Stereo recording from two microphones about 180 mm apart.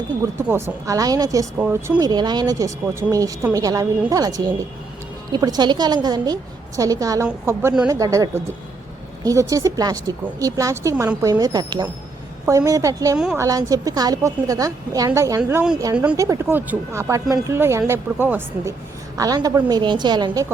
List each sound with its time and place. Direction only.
0.3 s speech: 10° right (ahead or behind)
2.0 s a woman's voice: 25° right (ahead or behind)
13.1 s a woman's voice: 5° right (ahead or behind)
13.4 s a woman's voice: 20° right (ahead or behind)